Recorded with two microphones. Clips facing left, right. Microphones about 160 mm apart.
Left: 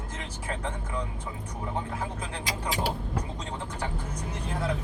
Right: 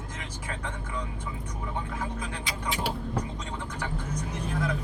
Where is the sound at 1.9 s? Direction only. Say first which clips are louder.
Even; 30° left (ahead or behind).